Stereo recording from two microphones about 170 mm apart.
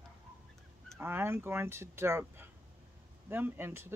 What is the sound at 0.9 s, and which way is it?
Speech, 15° right (ahead or behind).